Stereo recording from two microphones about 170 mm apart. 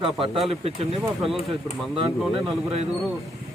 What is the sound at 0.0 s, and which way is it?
Speech, 30° right (ahead or behind).